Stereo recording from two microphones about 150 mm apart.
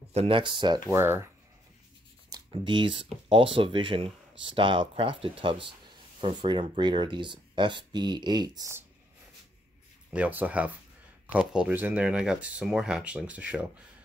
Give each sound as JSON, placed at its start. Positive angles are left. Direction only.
{"t": 0.1, "sound": "speech", "side_deg": -40}
{"t": 0.9, "sound": "speech", "side_deg": -15}
{"t": 2.3, "sound": "speech", "side_deg": -30}
{"t": 10.1, "sound": "speech", "side_deg": -10}